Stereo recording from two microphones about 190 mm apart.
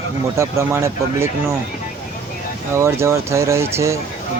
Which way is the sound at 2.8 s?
15° right (ahead or behind).